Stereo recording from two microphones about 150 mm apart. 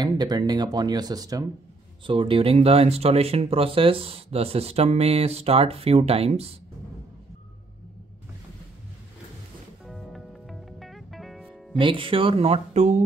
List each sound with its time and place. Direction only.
0.0 s speech: 30° right (ahead or behind)
2.0 s speech: 35° right (ahead or behind)
9.8 s music: centre (ahead or behind)
11.8 s speech: 35° right (ahead or behind); by 13.0 s 50° right (ahead or behind)